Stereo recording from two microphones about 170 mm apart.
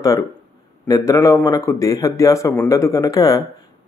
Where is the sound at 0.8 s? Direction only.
20° left (ahead or behind).